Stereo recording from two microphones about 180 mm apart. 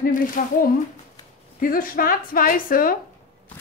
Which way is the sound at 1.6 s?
50° left (ahead or behind).